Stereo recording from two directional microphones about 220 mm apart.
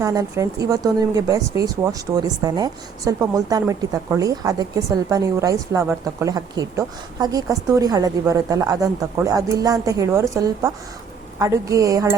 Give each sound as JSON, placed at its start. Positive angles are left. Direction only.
{"t": 0.0, "sound": "speech", "side_deg": -15}